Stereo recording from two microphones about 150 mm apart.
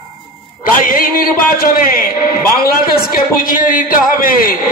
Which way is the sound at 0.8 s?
70° left (ahead or behind).